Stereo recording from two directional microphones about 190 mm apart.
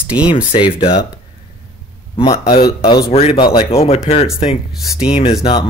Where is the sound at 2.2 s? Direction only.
15° left (ahead or behind).